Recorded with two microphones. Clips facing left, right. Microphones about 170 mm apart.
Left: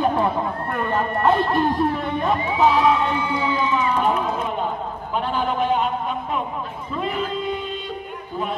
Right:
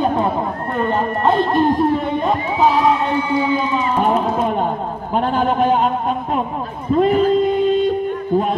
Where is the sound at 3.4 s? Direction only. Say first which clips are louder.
Right 4 dB; 20° right (ahead or behind).